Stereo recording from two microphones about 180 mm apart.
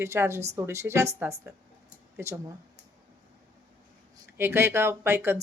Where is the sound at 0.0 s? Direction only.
15° right (ahead or behind).